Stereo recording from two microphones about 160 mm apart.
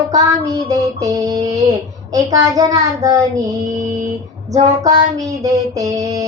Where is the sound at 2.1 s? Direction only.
20° right (ahead or behind).